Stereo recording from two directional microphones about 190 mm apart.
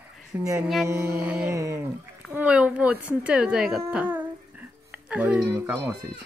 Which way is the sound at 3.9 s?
5° right (ahead or behind).